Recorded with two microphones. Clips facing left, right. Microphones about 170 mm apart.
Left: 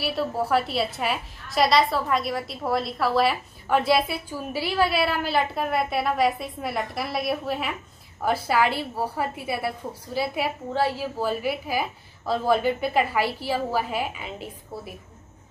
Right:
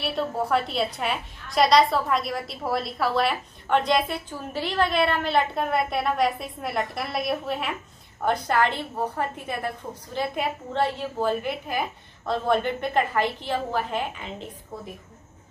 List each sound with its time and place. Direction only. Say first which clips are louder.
0.0 s a woman's voice: left 1 dB; 5° left (ahead or behind)